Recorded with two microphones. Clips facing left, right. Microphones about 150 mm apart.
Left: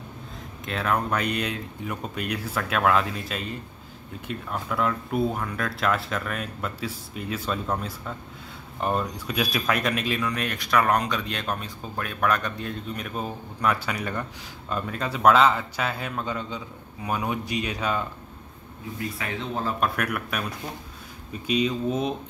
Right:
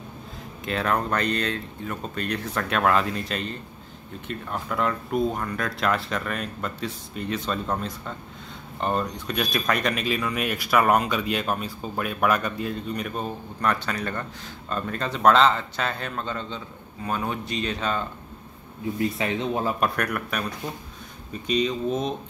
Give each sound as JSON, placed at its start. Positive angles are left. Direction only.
{"t": 0.7, "sound": "a man's voice", "side_deg": 0}
{"t": 18.9, "sound": "speech", "side_deg": -25}
{"t": 19.8, "sound": "speech", "side_deg": 5}
{"t": 21.5, "sound": "a man's voice", "side_deg": 5}